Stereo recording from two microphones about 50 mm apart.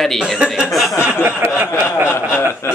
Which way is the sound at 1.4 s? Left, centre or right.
Right.